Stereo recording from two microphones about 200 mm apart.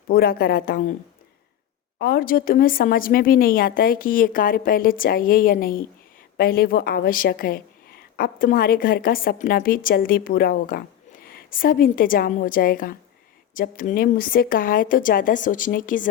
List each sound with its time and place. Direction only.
0.1 s a woman's voice: 50° left (ahead or behind)
2.0 s a woman's voice: 50° left (ahead or behind)